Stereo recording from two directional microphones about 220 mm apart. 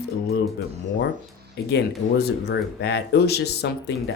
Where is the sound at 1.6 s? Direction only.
45° left (ahead or behind).